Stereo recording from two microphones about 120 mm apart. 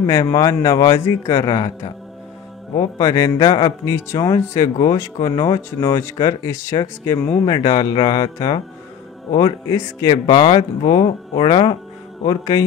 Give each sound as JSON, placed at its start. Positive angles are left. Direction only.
{"t": 0.0, "sound": "speech", "side_deg": 35}
{"t": 2.8, "sound": "speech", "side_deg": 35}
{"t": 3.9, "sound": "speech", "side_deg": 25}
{"t": 7.4, "sound": "speech", "side_deg": 35}
{"t": 12.3, "sound": "speech", "side_deg": 30}